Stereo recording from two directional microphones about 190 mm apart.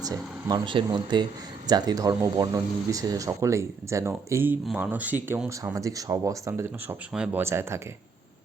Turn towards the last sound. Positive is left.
turn(degrees=-15)  # may be behind; listen again after turning